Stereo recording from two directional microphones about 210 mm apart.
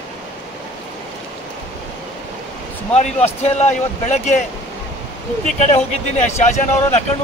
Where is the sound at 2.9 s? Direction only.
30° left (ahead or behind).